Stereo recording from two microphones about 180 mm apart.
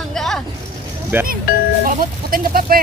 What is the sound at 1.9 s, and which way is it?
Speech, 50° right (ahead or behind).